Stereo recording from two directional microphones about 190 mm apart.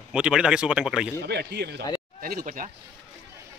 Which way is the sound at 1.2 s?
60° right (ahead or behind).